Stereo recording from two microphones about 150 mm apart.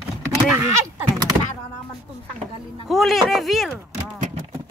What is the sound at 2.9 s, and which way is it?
Speech, centre (ahead or behind).